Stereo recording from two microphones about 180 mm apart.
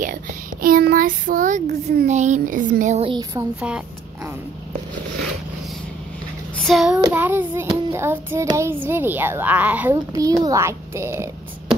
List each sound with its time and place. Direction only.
0.0 s speech: 50° right (ahead or behind)
3.1 s speech: 20° right (ahead or behind)
6.6 s child singing: centre (ahead or behind)
7.1 s child singing: 10° right (ahead or behind)
10.1 s child singing: 20° right (ahead or behind)